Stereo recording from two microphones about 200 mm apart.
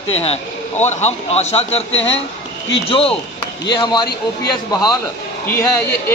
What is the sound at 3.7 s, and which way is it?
Speech, 20° left (ahead or behind).